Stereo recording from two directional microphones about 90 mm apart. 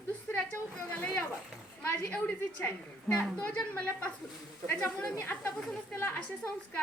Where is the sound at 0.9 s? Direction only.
20° left (ahead or behind).